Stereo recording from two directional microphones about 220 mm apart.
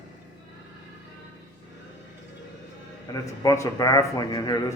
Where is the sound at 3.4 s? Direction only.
15° left (ahead or behind).